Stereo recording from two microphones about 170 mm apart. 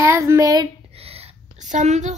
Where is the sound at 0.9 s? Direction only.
35° right (ahead or behind).